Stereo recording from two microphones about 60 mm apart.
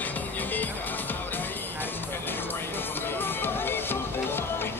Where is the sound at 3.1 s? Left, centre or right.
Left.